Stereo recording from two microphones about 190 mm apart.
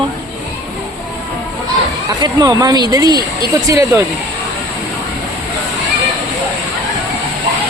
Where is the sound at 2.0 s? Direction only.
20° right (ahead or behind).